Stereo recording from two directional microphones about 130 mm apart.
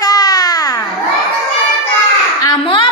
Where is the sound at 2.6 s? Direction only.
40° left (ahead or behind).